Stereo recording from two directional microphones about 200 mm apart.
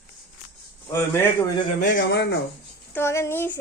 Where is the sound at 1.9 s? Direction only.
55° left (ahead or behind).